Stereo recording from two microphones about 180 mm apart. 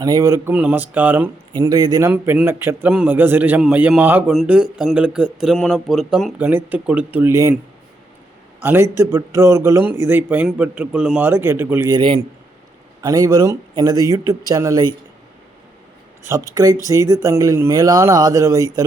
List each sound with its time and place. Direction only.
0.0 s a man's voice: 20° right (ahead or behind)
1.5 s a man's voice: 20° right (ahead or behind)
8.6 s a man's voice: 10° right (ahead or behind)
16.2 s a man's voice: 15° right (ahead or behind)